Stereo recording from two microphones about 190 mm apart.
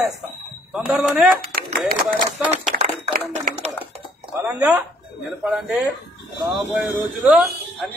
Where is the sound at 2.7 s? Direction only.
55° right (ahead or behind).